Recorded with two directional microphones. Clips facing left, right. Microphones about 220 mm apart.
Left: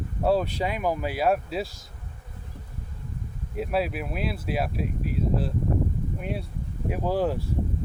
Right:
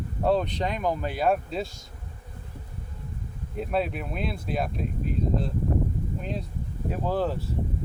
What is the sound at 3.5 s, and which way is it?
Speech, 5° left (ahead or behind).